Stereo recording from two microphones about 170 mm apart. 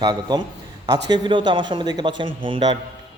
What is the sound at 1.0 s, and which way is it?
A man's voice, 25° right (ahead or behind).